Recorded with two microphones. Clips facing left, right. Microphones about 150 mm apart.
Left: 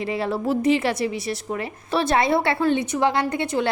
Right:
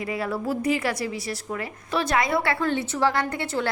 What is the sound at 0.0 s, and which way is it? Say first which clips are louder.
A woman's voice: left 3 dB; 25° left (ahead or behind).